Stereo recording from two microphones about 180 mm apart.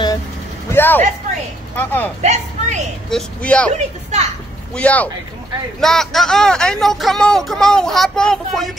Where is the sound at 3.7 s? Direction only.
40° right (ahead or behind).